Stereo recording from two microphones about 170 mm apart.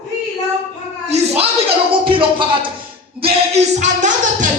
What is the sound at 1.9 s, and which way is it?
Music, 30° right (ahead or behind).